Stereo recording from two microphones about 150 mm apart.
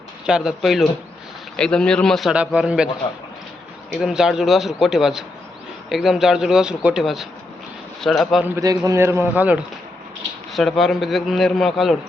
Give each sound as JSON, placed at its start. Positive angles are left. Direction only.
{"t": 0.3, "sound": "a man's voice", "side_deg": -5}
{"t": 3.9, "sound": "a man's voice", "side_deg": -5}
{"t": 8.4, "sound": "a man's voice", "side_deg": -20}
{"t": 10.5, "sound": "a man's voice", "side_deg": 0}